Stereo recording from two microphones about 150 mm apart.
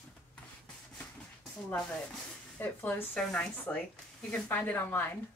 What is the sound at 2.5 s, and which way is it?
Speech, 10° left (ahead or behind).